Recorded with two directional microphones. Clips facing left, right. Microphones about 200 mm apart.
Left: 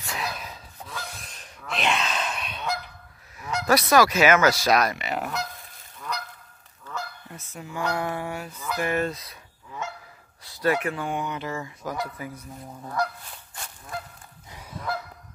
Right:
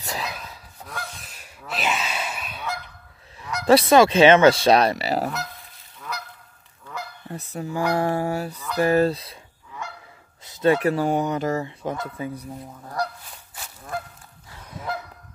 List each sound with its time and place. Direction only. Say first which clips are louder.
0.0 s a sound: right 2 dB; 40° right (ahead or behind)
1.2 s honk: even; 5° right (ahead or behind)
3.6 s goose: right 5 dB; 25° right (ahead or behind)
5.9 s goose: left 1 dB; 5° right (ahead or behind)
7.2 s speech: right 9 dB; 35° right (ahead or behind)
10.4 s a sound: right 5 dB; 20° right (ahead or behind)
10.8 s speech: right 8 dB; 40° right (ahead or behind)
11.6 s goose: right 3 dB; 25° right (ahead or behind)
13.0 s speech: even; 35° right (ahead or behind)